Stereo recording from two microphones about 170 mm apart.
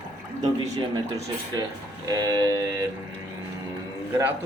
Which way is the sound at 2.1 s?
20° right (ahead or behind).